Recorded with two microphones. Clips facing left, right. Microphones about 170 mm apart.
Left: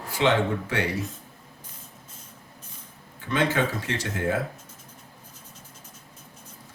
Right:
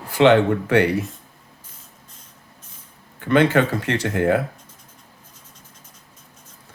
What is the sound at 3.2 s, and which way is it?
Speech, 60° right (ahead or behind).